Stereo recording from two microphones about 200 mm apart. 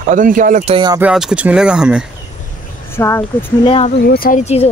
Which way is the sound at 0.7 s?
20° right (ahead or behind).